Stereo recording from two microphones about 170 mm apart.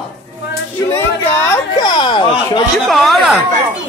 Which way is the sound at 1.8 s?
25° left (ahead or behind).